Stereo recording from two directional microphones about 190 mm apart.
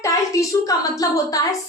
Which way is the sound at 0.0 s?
15° left (ahead or behind).